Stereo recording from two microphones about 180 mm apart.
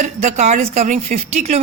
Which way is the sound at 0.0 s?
40° right (ahead or behind).